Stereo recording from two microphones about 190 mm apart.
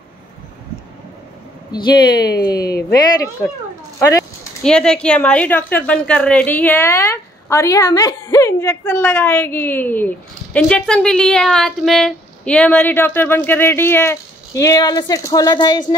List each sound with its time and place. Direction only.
1.7 s a woman's voice: 25° left (ahead or behind)
4.6 s a woman's voice: 5° left (ahead or behind); by 15.8 s 20° left (ahead or behind)